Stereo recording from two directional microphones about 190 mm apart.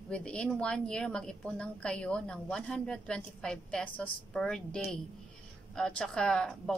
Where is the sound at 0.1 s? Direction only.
5° left (ahead or behind).